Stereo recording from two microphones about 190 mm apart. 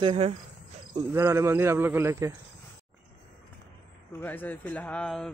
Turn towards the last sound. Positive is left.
turn(degrees=5)  # may be behind; listen again after turning